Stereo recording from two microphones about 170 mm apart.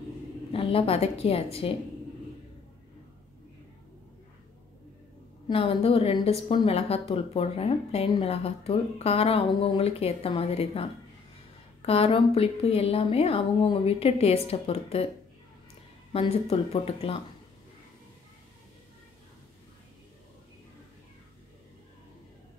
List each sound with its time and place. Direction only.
0.5 s a woman's voice: 35° left (ahead or behind)
5.5 s a woman's voice: 35° left (ahead or behind)
16.1 s a woman's voice: 35° left (ahead or behind)